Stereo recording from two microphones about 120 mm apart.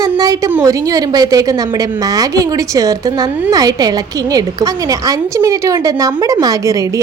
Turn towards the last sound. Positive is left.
turn(degrees=-30)  # may be behind; listen again after turning